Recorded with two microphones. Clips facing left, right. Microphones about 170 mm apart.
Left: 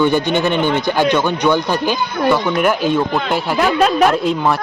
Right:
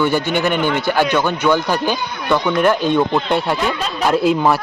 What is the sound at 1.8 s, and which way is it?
A man's voice, 5° left (ahead or behind).